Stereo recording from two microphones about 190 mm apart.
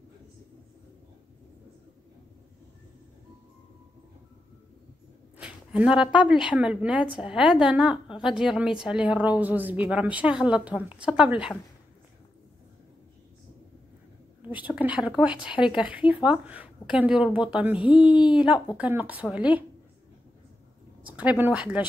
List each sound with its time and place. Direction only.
5.4 s a sound: 5° right (ahead or behind)
6.2 s a woman's voice: 5° right (ahead or behind)
14.8 s a woman's voice: 5° right (ahead or behind)
17.7 s speech: 25° left (ahead or behind)
18.3 s a woman's voice: 5° right (ahead or behind)
21.2 s a woman's voice: 10° right (ahead or behind)